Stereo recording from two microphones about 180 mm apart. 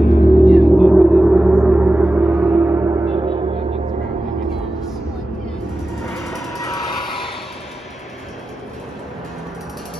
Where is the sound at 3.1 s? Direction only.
30° right (ahead or behind).